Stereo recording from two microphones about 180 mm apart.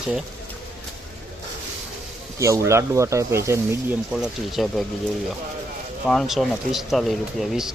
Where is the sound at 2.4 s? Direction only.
15° right (ahead or behind).